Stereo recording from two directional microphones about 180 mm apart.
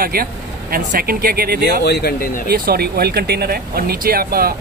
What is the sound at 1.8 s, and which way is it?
Speech, 60° left (ahead or behind).